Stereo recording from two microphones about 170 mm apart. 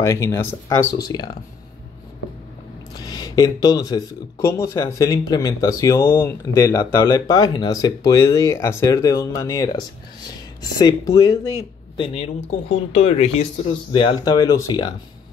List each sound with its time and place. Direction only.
0.0 s speech: 20° left (ahead or behind)
3.0 s speech: 25° left (ahead or behind)
12.9 s speech: 40° left (ahead or behind)